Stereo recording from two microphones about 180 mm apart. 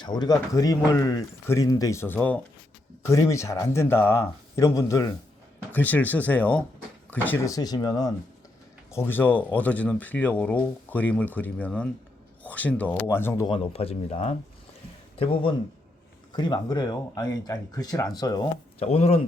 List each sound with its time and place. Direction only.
0.0 s speech: 25° left (ahead or behind)
13.5 s speech: 35° left (ahead or behind)
18.8 s speech: 35° left (ahead or behind)